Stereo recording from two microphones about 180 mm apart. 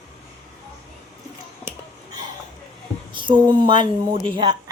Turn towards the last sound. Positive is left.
turn(degrees=-25)  # may be behind; listen again after turning